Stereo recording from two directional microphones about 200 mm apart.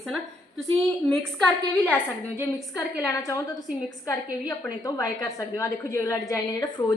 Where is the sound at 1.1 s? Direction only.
5° left (ahead or behind).